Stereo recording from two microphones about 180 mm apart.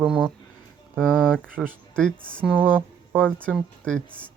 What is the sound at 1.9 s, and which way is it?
Speech, 5° left (ahead or behind).